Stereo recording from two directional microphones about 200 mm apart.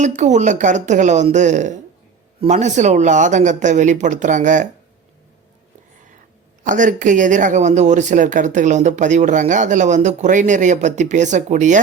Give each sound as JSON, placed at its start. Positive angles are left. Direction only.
{"t": 0.0, "sound": "speech", "side_deg": -35}
{"t": 6.7, "sound": "speech", "side_deg": -40}